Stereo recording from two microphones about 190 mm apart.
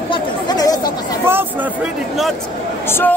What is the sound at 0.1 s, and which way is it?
Chatter, 20° left (ahead or behind).